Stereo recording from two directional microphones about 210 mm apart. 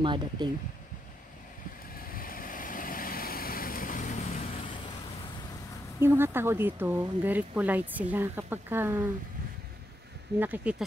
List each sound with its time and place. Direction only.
0.0 s speech: 20° right (ahead or behind)
2.0 s vehicle: 45° left (ahead or behind)
5.9 s speech: 10° right (ahead or behind)
10.4 s speech: 5° right (ahead or behind)